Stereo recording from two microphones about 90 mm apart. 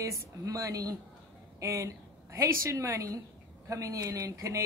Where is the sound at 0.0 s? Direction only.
35° right (ahead or behind).